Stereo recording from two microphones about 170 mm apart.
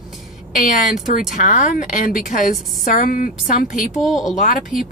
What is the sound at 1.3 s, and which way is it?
A woman's voice, 50° left (ahead or behind).